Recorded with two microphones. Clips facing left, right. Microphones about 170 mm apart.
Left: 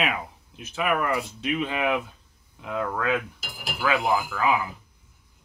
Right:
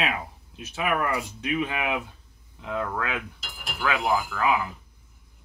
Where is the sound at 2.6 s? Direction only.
5° left (ahead or behind).